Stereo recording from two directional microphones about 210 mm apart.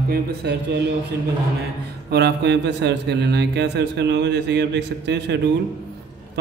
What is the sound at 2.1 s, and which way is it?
Speech, 50° right (ahead or behind).